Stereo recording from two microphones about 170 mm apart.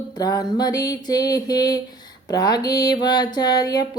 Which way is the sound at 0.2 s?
20° left (ahead or behind).